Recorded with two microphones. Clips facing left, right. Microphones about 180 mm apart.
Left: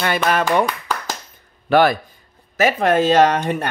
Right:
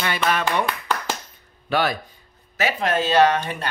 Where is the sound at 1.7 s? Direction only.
55° left (ahead or behind).